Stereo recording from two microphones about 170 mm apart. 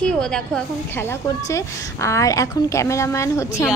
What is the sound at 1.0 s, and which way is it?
A woman's voice, 15° left (ahead or behind).